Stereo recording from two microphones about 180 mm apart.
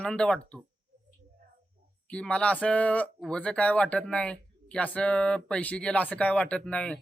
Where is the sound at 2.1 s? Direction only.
5° left (ahead or behind).